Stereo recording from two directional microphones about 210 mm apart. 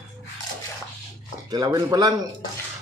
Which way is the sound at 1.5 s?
20° right (ahead or behind).